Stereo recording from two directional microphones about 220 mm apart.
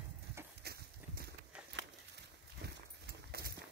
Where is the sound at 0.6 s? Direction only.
45° right (ahead or behind).